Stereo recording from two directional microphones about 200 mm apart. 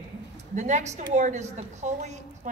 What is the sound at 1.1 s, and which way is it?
Speech, 35° right (ahead or behind).